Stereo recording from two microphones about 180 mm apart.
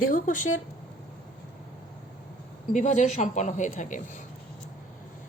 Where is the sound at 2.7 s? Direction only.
40° left (ahead or behind).